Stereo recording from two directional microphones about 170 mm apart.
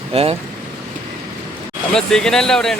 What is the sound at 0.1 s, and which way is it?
Speech, 35° right (ahead or behind).